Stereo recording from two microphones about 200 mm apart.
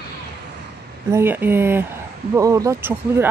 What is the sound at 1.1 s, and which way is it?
Speech, 10° right (ahead or behind).